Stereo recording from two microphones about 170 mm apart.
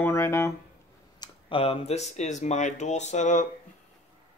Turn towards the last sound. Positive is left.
turn(degrees=45)  # may be behind; listen again after turning